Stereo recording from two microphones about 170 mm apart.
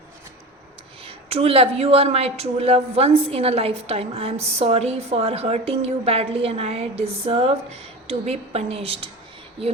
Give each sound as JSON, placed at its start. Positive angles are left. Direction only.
{"t": 1.0, "sound": "a woman's voice", "side_deg": -35}